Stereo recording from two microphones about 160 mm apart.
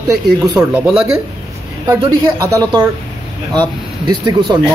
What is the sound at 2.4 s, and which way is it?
Speech, 20° right (ahead or behind).